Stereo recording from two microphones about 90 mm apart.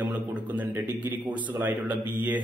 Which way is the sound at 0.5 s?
20° right (ahead or behind).